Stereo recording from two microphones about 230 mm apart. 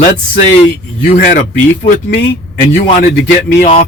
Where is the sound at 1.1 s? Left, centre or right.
Left.